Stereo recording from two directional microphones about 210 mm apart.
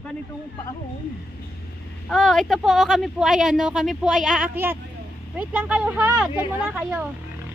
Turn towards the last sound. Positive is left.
turn(degrees=-5)  # may be behind; listen again after turning